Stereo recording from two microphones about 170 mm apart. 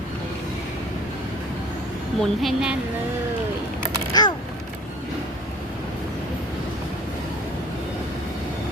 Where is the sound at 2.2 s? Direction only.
Centre (ahead or behind).